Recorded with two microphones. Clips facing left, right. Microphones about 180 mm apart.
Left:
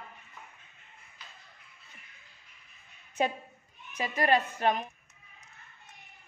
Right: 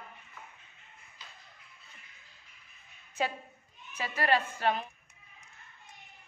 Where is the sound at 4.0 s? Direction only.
15° left (ahead or behind).